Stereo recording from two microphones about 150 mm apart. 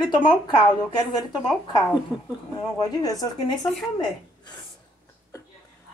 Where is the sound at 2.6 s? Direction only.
25° left (ahead or behind).